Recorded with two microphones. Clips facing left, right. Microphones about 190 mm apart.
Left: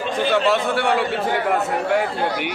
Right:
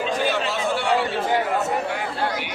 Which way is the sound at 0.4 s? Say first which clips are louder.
Left 5 dB; 60° left (ahead or behind).